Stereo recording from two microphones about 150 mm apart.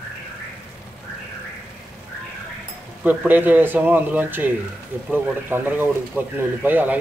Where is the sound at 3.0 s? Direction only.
10° right (ahead or behind).